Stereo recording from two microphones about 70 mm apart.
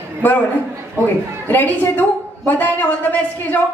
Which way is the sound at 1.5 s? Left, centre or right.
Left.